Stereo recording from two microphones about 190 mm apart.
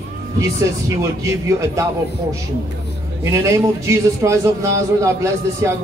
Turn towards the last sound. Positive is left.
turn(degrees=-15)  # may be behind; listen again after turning